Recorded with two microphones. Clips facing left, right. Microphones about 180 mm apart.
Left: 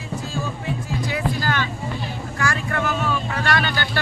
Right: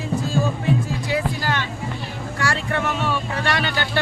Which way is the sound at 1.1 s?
25° right (ahead or behind).